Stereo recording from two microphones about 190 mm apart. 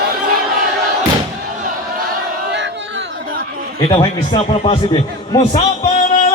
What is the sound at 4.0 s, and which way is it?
A man's voice, 25° left (ahead or behind).